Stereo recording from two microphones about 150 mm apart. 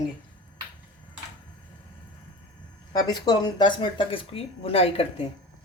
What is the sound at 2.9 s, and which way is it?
Speech, 25° left (ahead or behind).